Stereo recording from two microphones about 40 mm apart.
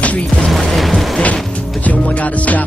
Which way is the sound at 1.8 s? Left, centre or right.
Left.